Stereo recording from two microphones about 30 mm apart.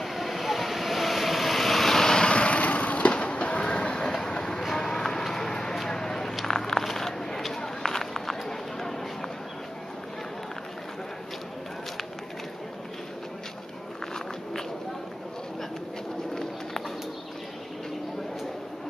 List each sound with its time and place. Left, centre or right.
0.0 s vehicle: centre
2.0 s vehicle: left
2.3 s vehicle: left
4.1 s a sound: left